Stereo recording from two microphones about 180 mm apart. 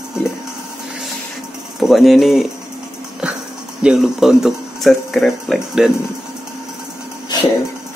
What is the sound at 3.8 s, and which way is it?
Speech, 5° right (ahead or behind).